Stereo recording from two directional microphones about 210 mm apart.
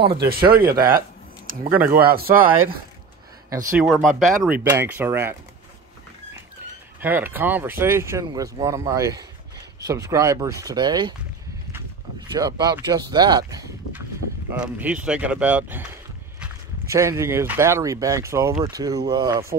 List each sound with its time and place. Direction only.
0.2 s speech: 45° right (ahead or behind)
3.8 s speech: centre (ahead or behind)
7.0 s speech: 10° right (ahead or behind)
12.3 s speech: 20° right (ahead or behind)